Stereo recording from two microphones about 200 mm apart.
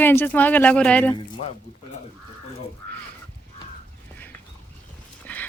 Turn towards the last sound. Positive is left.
turn(degrees=10)  # may be behind; listen again after turning